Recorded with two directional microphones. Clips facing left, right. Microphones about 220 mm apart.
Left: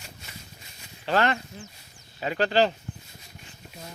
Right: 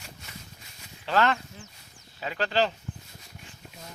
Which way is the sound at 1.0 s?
45° left (ahead or behind).